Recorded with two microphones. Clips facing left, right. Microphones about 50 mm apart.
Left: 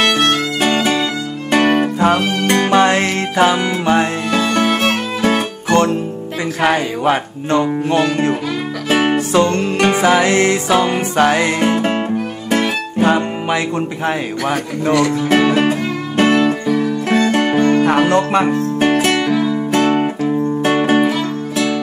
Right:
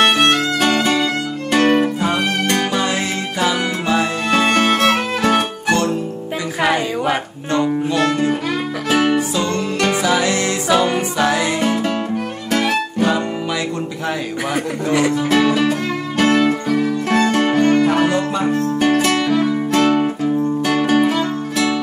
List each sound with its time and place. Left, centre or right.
0.6 s music: left
2.7 s music: left
4.3 s music: right
5.7 s music: left
6.7 s speech: left
8.8 s music: left
9.8 s music: left
10.0 s music: left
11.6 s music: left
14.9 s speech: centre
15.2 s music: left
17.7 s music: left
18.5 s music: left
19.1 s music: left